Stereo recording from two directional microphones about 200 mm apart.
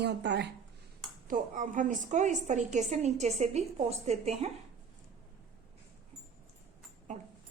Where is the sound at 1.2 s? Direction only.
40° right (ahead or behind).